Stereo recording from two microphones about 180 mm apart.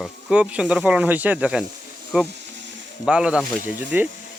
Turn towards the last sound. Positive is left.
turn(degrees=-10)  # may be behind; listen again after turning